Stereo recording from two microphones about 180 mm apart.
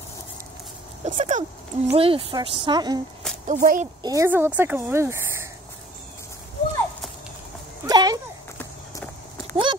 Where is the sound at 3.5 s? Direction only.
45° right (ahead or behind).